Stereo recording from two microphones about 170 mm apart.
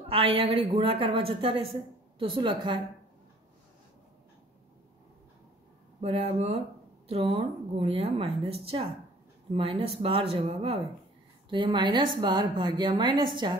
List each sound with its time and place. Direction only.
0.1 s a woman's voice: 35° right (ahead or behind)
5.9 s a woman's voice: 35° right (ahead or behind)